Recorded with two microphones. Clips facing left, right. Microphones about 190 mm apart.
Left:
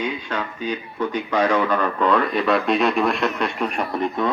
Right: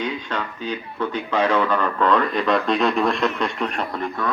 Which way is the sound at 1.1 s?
15° left (ahead or behind).